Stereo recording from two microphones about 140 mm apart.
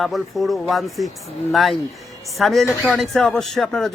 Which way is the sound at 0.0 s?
Centre (ahead or behind).